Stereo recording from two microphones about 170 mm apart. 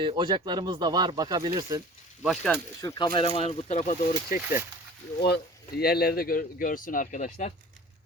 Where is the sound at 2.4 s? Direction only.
15° left (ahead or behind).